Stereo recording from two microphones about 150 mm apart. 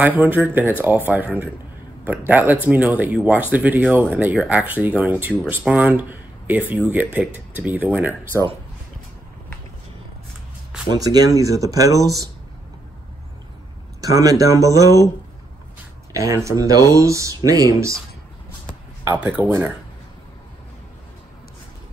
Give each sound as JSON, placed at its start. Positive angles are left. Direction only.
{"t": 0.0, "sound": "speech", "side_deg": -10}
{"t": 10.9, "sound": "speech", "side_deg": -25}
{"t": 14.0, "sound": "speech", "side_deg": -25}
{"t": 16.1, "sound": "speech", "side_deg": -20}
{"t": 19.0, "sound": "speech", "side_deg": -10}